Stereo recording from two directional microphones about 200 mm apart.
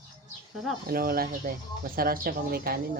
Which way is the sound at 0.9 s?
45° right (ahead or behind).